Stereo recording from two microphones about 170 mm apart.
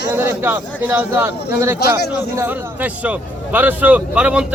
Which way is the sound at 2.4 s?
10° right (ahead or behind).